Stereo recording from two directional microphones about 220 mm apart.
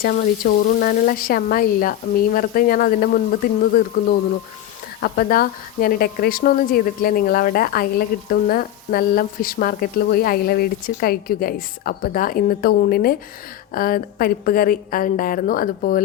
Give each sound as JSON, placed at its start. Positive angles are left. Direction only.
{"t": 0.0, "sound": "a woman's voice", "side_deg": 40}
{"t": 4.9, "sound": "a woman's voice", "side_deg": 40}